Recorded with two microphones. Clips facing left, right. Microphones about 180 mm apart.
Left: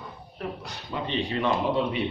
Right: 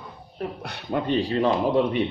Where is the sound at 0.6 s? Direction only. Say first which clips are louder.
Right 7 dB; 60° right (ahead or behind).